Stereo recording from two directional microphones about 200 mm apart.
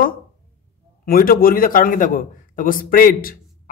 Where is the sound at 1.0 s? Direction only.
45° left (ahead or behind).